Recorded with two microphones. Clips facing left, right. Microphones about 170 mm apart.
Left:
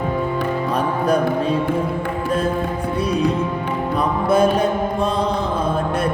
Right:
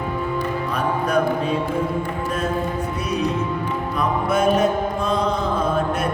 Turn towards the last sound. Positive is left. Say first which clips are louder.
# left 3 dB
turn(degrees=30)  # may be behind; listen again after turning